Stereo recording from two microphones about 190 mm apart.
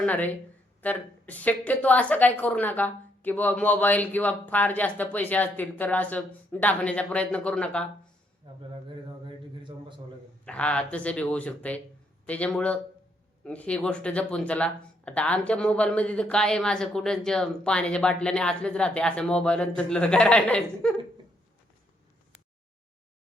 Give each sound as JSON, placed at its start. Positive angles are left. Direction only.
{"t": 0.0, "sound": "a woman's voice", "side_deg": 10}
{"t": 8.4, "sound": "speech", "side_deg": -25}
{"t": 9.2, "sound": "a sound", "side_deg": -25}
{"t": 10.4, "sound": "a woman's voice", "side_deg": 5}